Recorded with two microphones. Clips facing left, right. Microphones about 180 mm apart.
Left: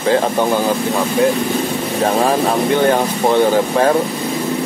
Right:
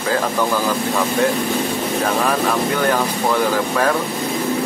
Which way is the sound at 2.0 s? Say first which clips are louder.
Left 5 dB; 30° left (ahead or behind).